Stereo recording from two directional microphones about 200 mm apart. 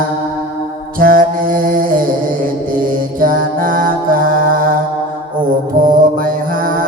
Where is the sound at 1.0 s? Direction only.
45° right (ahead or behind).